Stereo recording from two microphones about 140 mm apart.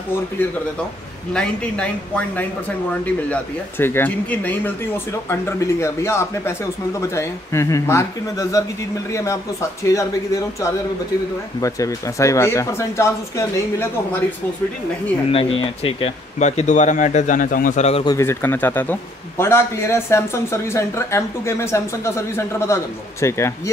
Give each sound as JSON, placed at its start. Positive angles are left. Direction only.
{"t": 1.3, "sound": "speech", "side_deg": 5}
{"t": 15.3, "sound": "speech", "side_deg": 40}
{"t": 16.3, "sound": "a man's voice", "side_deg": 55}
{"t": 18.0, "sound": "speech", "side_deg": 20}